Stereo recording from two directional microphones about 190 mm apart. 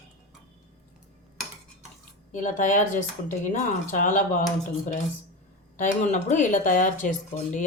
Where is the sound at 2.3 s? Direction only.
40° left (ahead or behind).